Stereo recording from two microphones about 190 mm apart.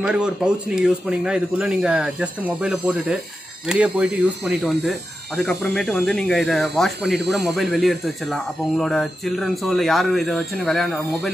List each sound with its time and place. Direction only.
0.0 s speech: 5° right (ahead or behind)